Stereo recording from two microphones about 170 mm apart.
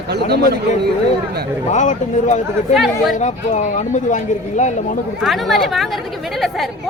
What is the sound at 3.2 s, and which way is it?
Speech, 45° left (ahead or behind).